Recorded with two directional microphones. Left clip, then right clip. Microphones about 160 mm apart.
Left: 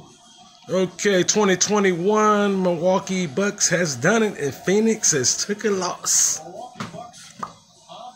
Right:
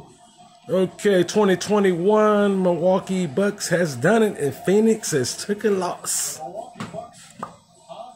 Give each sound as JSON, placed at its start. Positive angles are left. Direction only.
{"t": 0.7, "sound": "speech", "side_deg": -15}